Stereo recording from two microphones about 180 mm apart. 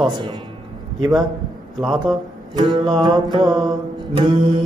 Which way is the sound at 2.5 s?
25° right (ahead or behind).